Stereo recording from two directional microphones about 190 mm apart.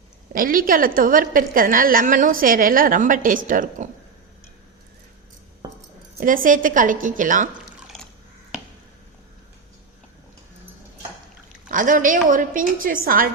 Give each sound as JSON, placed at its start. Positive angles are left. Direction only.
{"t": 0.3, "sound": "a woman's voice", "side_deg": -50}
{"t": 6.1, "sound": "a woman's voice", "side_deg": -45}
{"t": 11.7, "sound": "a woman's voice", "side_deg": -45}